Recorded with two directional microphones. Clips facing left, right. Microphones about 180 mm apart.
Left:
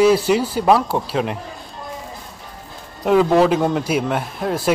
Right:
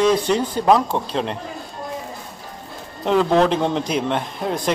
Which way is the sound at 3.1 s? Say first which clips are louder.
Left 2 dB; 5° left (ahead or behind).